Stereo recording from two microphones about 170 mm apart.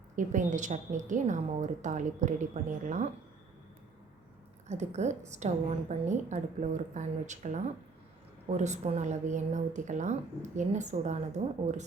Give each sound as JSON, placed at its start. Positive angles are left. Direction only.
{"t": 0.2, "sound": "a woman's voice", "side_deg": -50}
{"t": 4.7, "sound": "a woman's voice", "side_deg": -40}